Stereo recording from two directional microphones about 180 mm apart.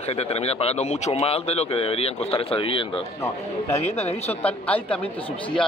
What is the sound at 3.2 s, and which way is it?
Speech, 15° left (ahead or behind).